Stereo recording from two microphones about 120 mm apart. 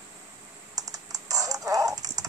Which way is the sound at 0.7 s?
30° right (ahead or behind).